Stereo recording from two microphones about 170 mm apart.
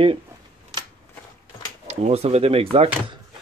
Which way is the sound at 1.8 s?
40° right (ahead or behind).